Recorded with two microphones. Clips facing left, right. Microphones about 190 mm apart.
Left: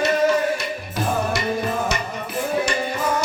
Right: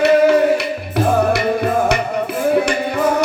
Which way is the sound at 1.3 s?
60° right (ahead or behind).